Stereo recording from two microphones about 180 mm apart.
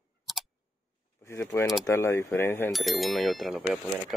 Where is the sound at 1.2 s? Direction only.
15° left (ahead or behind).